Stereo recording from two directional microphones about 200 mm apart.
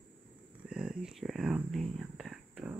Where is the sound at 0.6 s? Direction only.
5° right (ahead or behind).